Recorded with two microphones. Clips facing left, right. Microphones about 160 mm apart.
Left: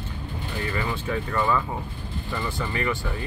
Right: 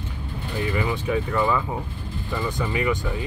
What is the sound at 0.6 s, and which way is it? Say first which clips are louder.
Speech: right 4 dB; 20° right (ahead or behind).